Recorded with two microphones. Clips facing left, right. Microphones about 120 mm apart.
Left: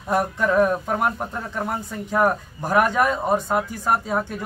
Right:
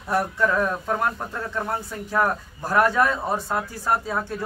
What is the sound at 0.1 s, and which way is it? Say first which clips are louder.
A man's voice: left 2 dB; 20° left (ahead or behind).